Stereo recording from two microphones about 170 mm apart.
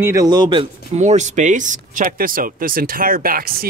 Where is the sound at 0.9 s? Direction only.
40° right (ahead or behind).